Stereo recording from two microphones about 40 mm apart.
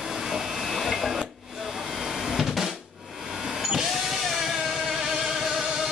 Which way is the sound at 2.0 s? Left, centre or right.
Centre.